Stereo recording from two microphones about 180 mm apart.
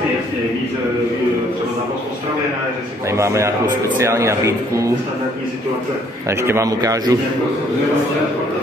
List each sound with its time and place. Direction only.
3.1 s a man's voice: 15° right (ahead or behind)
6.4 s a man's voice: 15° right (ahead or behind)